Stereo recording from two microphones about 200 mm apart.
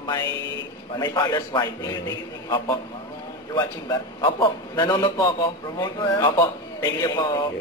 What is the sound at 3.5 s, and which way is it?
A man's voice, 20° left (ahead or behind).